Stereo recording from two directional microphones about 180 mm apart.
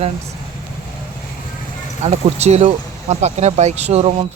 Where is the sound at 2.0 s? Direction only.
35° right (ahead or behind).